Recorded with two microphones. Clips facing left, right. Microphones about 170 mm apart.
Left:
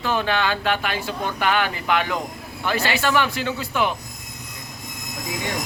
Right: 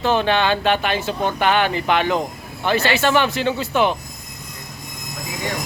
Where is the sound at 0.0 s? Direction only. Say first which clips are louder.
Right 4 dB; 25° right (ahead or behind).